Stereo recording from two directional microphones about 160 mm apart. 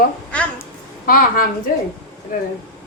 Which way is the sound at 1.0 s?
65° left (ahead or behind).